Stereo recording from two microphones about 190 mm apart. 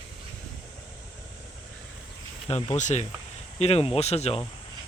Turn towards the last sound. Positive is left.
turn(degrees=35)  # may be behind; listen again after turning